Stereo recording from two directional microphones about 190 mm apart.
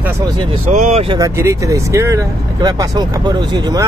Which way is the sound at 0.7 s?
35° right (ahead or behind).